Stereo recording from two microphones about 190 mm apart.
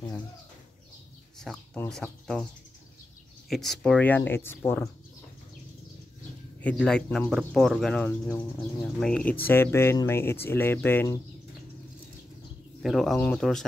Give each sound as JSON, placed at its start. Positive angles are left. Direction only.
{"t": 1.4, "sound": "speech", "side_deg": 5}
{"t": 3.4, "sound": "speech", "side_deg": 0}
{"t": 6.6, "sound": "speech", "side_deg": 5}
{"t": 8.3, "sound": "speech", "side_deg": 25}
{"t": 8.8, "sound": "speech", "side_deg": 5}
{"t": 12.8, "sound": "speech", "side_deg": 0}